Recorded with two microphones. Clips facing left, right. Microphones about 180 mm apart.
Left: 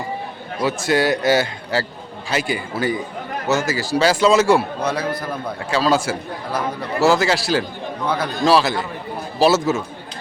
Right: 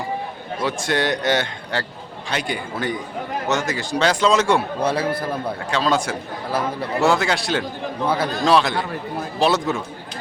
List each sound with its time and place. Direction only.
0.6 s a man's voice: 5° left (ahead or behind)
4.8 s a man's voice: 30° right (ahead or behind)
5.7 s a man's voice: 5° left (ahead or behind)